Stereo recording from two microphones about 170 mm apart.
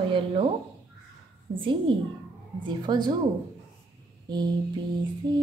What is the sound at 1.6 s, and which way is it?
Female singing, 30° right (ahead or behind).